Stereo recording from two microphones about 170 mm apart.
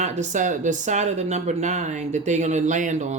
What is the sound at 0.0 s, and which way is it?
Speech, 45° right (ahead or behind).